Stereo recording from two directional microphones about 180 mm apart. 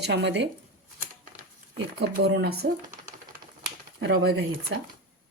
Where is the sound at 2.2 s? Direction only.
70° right (ahead or behind).